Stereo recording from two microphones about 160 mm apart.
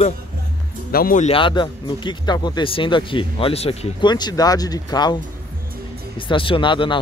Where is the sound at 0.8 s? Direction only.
65° left (ahead or behind).